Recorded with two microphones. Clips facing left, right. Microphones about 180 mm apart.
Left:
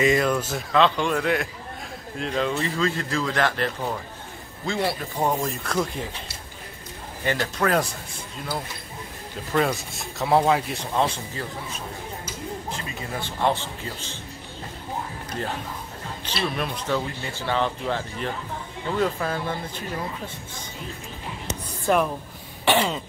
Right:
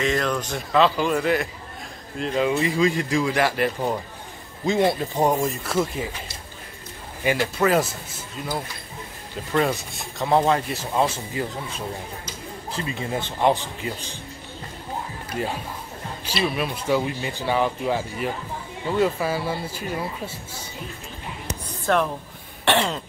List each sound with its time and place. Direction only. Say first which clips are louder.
0.0 s speech: left 3 dB; 5° left (ahead or behind); by 5.4 s 15° right (ahead or behind)
5.4 s speech: right 2 dB; 5° right (ahead or behind)
7.2 s speech: right 3 dB; 10° right (ahead or behind)
9.5 s speech: right 1 dB; centre (ahead or behind)
13.1 s speech: right 3 dB; 20° right (ahead or behind)
15.3 s speech: right 3 dB; 10° right (ahead or behind)
21.8 s speech: even; 5° left (ahead or behind)